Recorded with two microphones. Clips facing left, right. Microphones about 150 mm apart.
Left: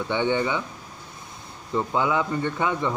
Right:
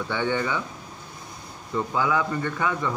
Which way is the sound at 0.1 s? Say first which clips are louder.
Left 3 dB; 20° left (ahead or behind).